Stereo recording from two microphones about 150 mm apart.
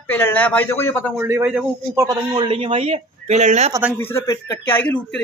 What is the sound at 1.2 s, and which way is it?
Speech, 15° right (ahead or behind).